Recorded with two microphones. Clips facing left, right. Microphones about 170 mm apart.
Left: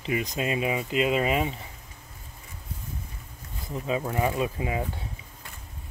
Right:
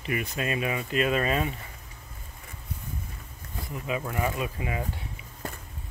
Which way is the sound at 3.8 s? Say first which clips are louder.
Left 3 dB; 25° left (ahead or behind).